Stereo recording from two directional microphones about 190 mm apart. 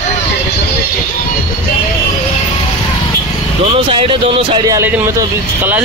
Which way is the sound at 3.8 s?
30° right (ahead or behind).